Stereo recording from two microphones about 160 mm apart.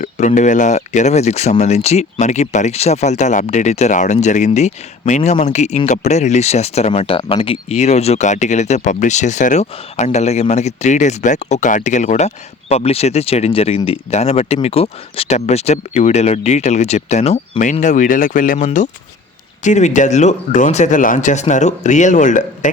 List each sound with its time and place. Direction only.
0.0 s speech: 50° left (ahead or behind)